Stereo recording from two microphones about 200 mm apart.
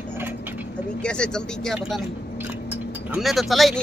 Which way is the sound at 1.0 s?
5° left (ahead or behind).